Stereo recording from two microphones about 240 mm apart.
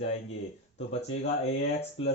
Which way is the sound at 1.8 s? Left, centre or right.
Left.